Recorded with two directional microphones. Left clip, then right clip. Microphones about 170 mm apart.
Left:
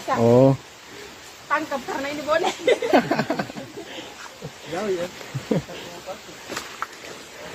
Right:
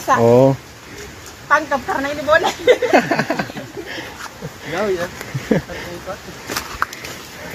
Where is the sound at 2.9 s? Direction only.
20° left (ahead or behind).